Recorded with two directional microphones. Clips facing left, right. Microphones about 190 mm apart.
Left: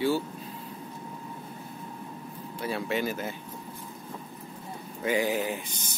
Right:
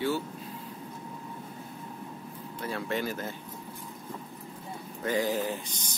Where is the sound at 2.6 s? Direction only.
10° left (ahead or behind).